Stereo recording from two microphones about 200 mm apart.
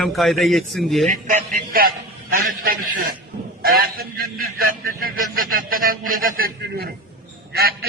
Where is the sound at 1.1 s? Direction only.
40° right (ahead or behind).